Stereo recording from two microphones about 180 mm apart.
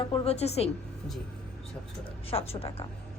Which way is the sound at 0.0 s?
30° left (ahead or behind).